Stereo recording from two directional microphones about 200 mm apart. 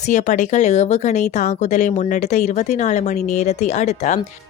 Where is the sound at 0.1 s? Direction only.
40° left (ahead or behind).